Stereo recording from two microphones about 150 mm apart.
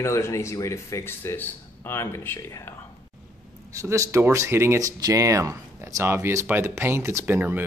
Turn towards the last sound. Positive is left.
turn(degrees=-15)  # may be behind; listen again after turning